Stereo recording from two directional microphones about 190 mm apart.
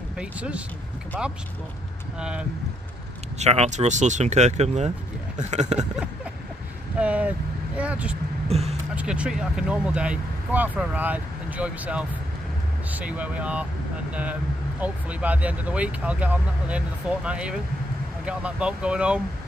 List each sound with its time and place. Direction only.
0.2 s speech: 5° right (ahead or behind)
2.1 s speech: 5° right (ahead or behind)
3.3 s speech: 35° right (ahead or behind)
7.0 s speech: 5° right (ahead or behind)
8.5 s speech: 35° right (ahead or behind)
8.9 s speech: 5° right (ahead or behind)